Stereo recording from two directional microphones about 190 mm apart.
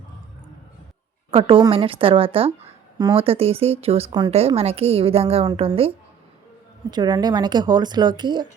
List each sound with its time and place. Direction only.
1.3 s speech: 30° right (ahead or behind)
6.9 s speech: 20° right (ahead or behind)